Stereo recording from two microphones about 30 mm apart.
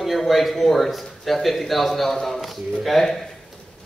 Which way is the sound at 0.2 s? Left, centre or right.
Centre.